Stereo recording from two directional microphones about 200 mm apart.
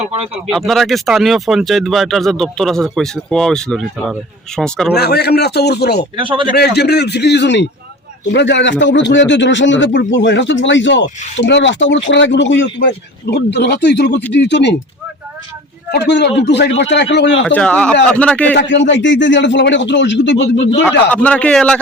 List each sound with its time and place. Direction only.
0.4 s speech: centre (ahead or behind)
4.9 s a man's voice: 55° left (ahead or behind)
6.1 s a man's voice: 25° right (ahead or behind)
6.5 s a man's voice: 55° left (ahead or behind)
15.9 s a man's voice: 60° left (ahead or behind)
17.4 s speech: 5° left (ahead or behind)
18.5 s a man's voice: 65° left (ahead or behind)
21.1 s speech: 5° left (ahead or behind)